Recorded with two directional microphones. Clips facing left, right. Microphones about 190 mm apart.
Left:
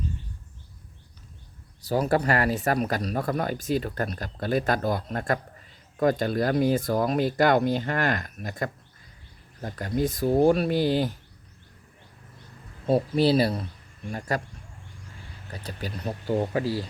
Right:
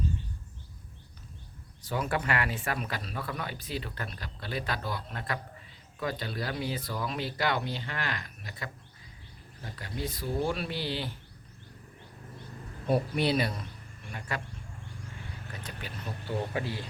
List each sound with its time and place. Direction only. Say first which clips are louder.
1.8 s speech: left 8 dB; 35° left (ahead or behind)
12.9 s speech: left 6 dB; 30° left (ahead or behind)
15.6 s speech: left 9 dB; 40° left (ahead or behind)